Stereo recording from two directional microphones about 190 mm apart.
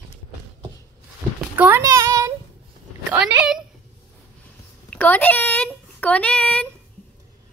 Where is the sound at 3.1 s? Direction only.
5° right (ahead or behind).